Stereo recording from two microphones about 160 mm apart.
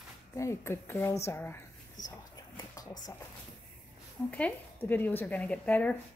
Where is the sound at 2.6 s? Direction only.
25° left (ahead or behind).